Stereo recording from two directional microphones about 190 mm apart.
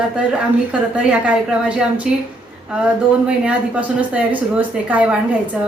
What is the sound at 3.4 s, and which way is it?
A woman's voice, 5° right (ahead or behind).